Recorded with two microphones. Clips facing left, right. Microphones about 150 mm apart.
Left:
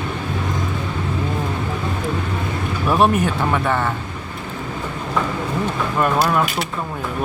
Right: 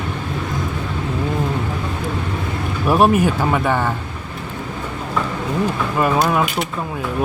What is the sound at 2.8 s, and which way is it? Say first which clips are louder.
Speech: right 2 dB; 10° right (ahead or behind).